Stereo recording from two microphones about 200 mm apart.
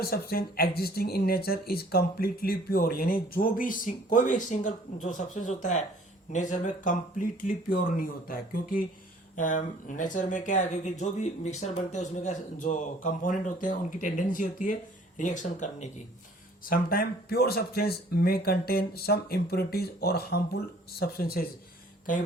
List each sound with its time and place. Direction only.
0.0 s speech: 50° left (ahead or behind)